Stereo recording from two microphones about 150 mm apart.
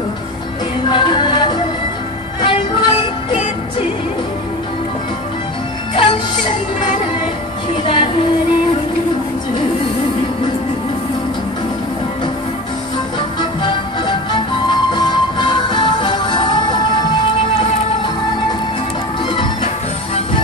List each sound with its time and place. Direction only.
0.8 s music: 30° left (ahead or behind)
5.9 s music: 30° left (ahead or behind)
7.8 s music: 35° left (ahead or behind)
13.4 s music: 30° left (ahead or behind)
19.2 s music: 35° left (ahead or behind)